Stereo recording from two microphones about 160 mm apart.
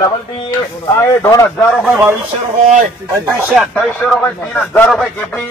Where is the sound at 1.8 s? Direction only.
10° right (ahead or behind).